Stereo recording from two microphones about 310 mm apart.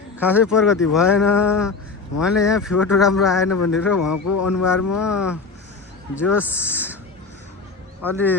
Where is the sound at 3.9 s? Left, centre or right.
Left.